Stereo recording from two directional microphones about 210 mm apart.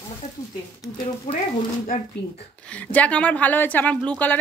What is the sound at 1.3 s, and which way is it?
Speech, 40° left (ahead or behind).